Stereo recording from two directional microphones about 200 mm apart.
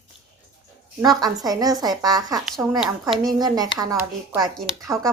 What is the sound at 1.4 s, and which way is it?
Speech, 20° right (ahead or behind).